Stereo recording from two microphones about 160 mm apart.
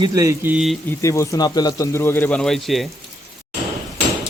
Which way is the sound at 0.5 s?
Centre (ahead or behind).